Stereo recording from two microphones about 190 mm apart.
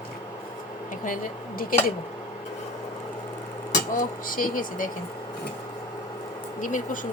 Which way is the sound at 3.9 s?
45° left (ahead or behind).